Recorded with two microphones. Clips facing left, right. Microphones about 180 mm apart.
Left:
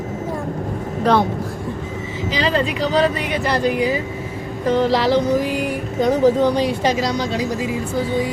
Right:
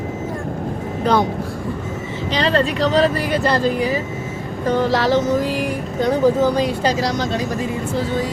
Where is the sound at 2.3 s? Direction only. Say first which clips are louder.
Right 2 dB; 5° left (ahead or behind).